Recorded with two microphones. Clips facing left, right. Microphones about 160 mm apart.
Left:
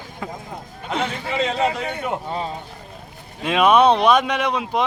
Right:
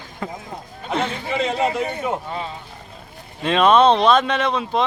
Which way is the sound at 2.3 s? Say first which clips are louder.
Left 2 dB; 35° left (ahead or behind).